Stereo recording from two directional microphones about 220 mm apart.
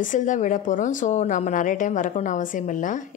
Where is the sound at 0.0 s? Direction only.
35° left (ahead or behind).